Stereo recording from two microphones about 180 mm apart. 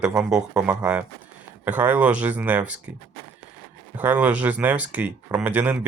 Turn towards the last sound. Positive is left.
turn(degrees=-10)  # may be behind; listen again after turning